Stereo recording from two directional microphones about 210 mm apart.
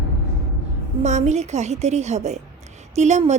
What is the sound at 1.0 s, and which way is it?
A woman's voice, 35° right (ahead or behind).